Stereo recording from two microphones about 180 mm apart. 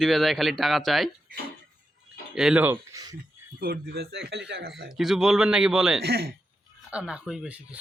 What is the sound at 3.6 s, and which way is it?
Speech, 60° right (ahead or behind).